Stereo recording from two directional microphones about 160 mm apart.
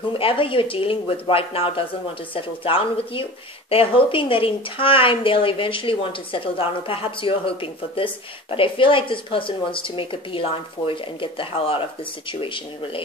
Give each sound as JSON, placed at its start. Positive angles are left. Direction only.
{"t": 0.1, "sound": "speech", "side_deg": 35}